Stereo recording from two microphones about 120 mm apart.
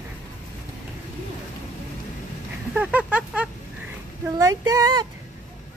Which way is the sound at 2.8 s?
10° right (ahead or behind).